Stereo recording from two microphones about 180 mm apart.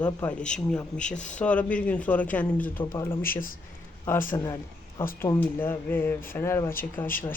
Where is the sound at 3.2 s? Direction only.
50° left (ahead or behind).